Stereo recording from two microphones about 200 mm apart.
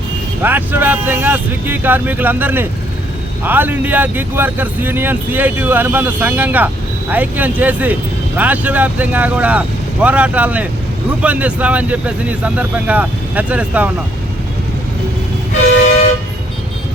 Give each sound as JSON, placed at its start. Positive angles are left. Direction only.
{"t": 0.4, "sound": "speech", "side_deg": -10}